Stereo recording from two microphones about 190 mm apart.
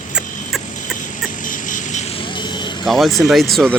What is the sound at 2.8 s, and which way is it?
Speech, centre (ahead or behind).